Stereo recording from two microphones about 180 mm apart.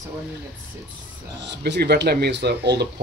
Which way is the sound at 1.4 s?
70° right (ahead or behind).